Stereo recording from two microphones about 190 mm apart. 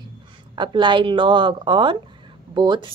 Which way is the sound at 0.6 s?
25° right (ahead or behind).